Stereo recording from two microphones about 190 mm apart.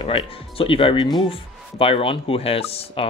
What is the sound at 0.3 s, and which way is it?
Speech, 30° left (ahead or behind).